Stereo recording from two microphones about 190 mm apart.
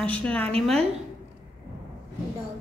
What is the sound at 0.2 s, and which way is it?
Speech, 5° left (ahead or behind).